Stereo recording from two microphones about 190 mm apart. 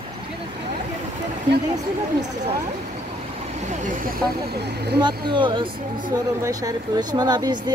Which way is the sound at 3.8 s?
45° right (ahead or behind).